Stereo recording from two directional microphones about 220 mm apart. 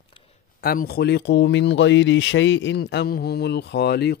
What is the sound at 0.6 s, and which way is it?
Speech, 40° left (ahead or behind).